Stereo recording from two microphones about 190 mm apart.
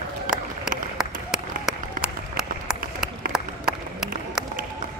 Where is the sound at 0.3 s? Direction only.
Centre (ahead or behind).